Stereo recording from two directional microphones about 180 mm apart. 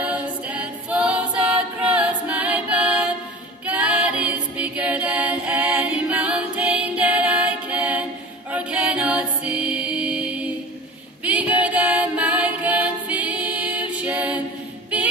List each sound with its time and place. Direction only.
0.0 s a capella: 5° right (ahead or behind)
11.2 s music: 10° right (ahead or behind)